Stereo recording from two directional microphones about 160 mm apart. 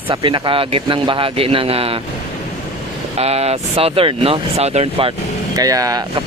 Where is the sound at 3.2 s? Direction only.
40° right (ahead or behind).